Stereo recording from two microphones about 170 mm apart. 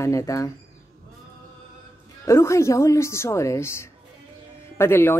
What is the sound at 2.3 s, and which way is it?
Speech, 15° left (ahead or behind).